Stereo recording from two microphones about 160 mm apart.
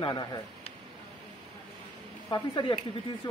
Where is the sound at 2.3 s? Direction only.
30° left (ahead or behind).